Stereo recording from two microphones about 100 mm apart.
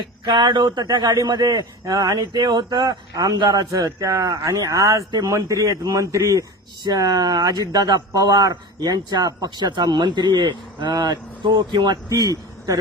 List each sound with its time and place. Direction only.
0.0 s speech: 50° right (ahead or behind); by 6.4 s 30° right (ahead or behind)
6.8 s speech: 45° right (ahead or behind)